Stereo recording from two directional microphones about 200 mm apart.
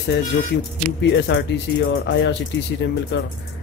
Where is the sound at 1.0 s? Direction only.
60° left (ahead or behind).